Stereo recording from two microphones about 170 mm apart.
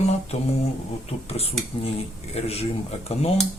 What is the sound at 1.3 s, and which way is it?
Speech, 35° left (ahead or behind).